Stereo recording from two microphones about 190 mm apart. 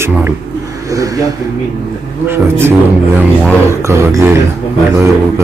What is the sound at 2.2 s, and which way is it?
A man's voice, 15° right (ahead or behind).